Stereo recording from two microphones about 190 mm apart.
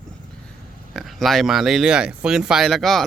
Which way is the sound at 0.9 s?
Centre (ahead or behind).